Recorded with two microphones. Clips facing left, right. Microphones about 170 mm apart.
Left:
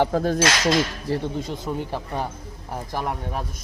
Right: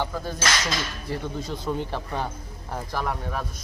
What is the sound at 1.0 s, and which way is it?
Speech, 30° left (ahead or behind).